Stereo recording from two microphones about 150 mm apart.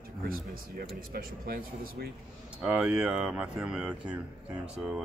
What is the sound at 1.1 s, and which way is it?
Speech, 80° right.